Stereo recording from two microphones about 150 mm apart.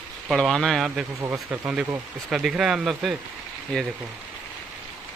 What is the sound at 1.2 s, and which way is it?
Speech, 20° right (ahead or behind).